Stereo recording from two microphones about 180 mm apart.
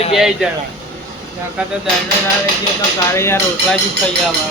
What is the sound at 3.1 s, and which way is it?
Speech, 15° left (ahead or behind).